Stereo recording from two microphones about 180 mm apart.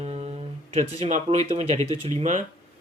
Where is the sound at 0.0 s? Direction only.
35° right (ahead or behind).